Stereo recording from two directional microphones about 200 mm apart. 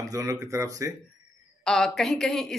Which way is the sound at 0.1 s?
15° right (ahead or behind).